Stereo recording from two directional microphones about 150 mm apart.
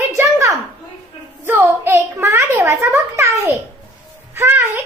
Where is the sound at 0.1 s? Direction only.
20° right (ahead or behind).